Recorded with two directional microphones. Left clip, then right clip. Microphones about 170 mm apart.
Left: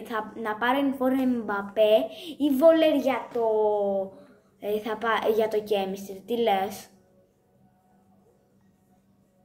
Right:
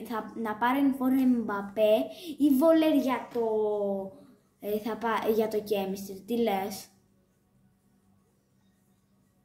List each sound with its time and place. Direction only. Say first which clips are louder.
0.0 s a woman's voice: left 4 dB; 40° right (ahead or behind)